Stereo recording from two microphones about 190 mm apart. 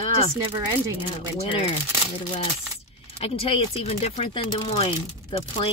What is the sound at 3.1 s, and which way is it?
Speech, 30° left (ahead or behind).